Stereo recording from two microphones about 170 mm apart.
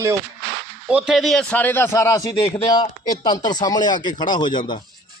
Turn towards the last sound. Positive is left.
turn(degrees=25)  # may be behind; listen again after turning